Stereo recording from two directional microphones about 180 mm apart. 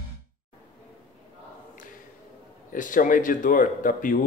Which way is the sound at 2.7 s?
50° left (ahead or behind).